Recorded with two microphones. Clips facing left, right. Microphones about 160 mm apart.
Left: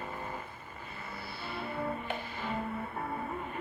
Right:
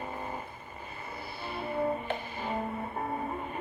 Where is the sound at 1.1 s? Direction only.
20° right (ahead or behind).